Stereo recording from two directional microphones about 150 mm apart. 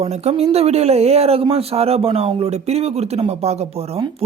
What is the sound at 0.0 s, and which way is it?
Speech, 45° right (ahead or behind).